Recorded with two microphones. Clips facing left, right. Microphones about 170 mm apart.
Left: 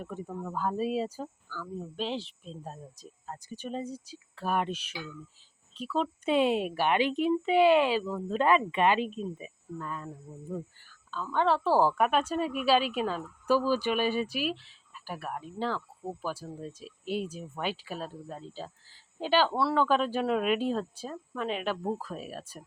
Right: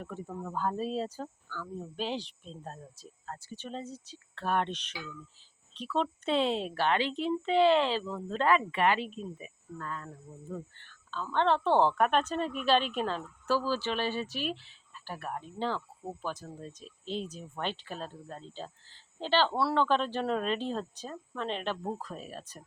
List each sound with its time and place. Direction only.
0.0 s a woman's voice: 15° left (ahead or behind)
0.4 s a woman's voice: 5° left (ahead or behind)
3.0 s a woman's voice: 15° left (ahead or behind)
14.5 s a woman's voice: centre (ahead or behind)